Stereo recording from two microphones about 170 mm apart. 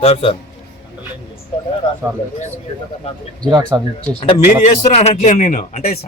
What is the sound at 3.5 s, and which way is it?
Speech, 25° right (ahead or behind).